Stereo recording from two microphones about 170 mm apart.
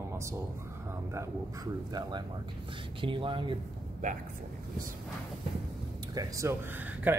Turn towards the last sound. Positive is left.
turn(degrees=-10)  # may be behind; listen again after turning